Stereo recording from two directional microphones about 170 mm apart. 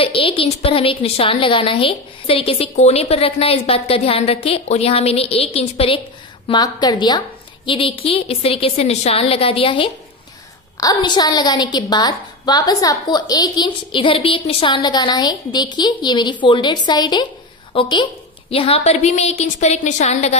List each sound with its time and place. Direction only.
0.0 s a woman's voice: 35° left (ahead or behind)